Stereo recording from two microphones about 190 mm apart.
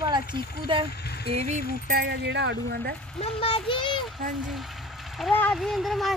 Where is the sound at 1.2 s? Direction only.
30° right (ahead or behind).